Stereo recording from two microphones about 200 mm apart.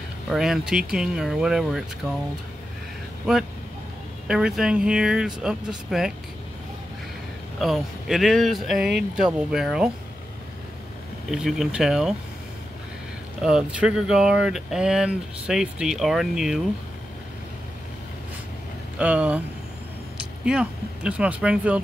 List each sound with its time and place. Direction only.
0.3 s speech: centre (ahead or behind)
4.3 s speech: 5° right (ahead or behind)
7.5 s speech: centre (ahead or behind)
11.2 s speech: centre (ahead or behind)
13.4 s speech: 5° right (ahead or behind)
18.9 s speech: 5° right (ahead or behind)
20.4 s speech: 5° right (ahead or behind)